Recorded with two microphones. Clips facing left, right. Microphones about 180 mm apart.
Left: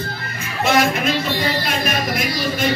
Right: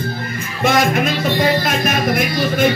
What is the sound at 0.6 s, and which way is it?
Music, 50° right (ahead or behind).